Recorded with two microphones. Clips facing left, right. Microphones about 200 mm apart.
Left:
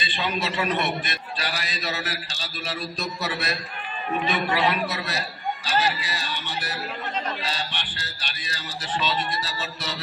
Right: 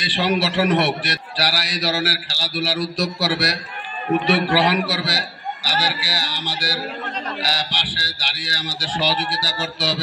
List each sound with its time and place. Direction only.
0.0 s a man's voice: 75° right (ahead or behind)